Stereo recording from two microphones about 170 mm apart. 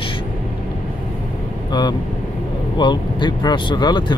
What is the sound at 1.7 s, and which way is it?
Speech, 25° left (ahead or behind).